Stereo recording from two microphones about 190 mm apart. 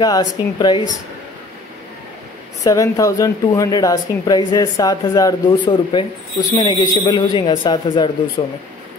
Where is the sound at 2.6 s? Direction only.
20° left (ahead or behind).